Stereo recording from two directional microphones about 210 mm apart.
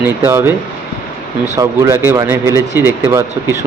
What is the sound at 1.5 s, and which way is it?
Speech, 15° right (ahead or behind).